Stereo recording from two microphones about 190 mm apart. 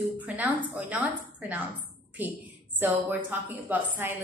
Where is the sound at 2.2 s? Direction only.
10° right (ahead or behind).